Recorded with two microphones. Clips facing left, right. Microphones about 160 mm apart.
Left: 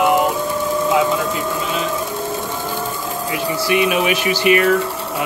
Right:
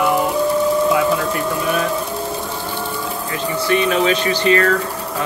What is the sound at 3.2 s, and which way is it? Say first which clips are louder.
Speech: even; 15° left (ahead or behind).